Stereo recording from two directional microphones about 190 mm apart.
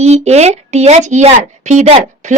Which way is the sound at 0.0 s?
35° right (ahead or behind).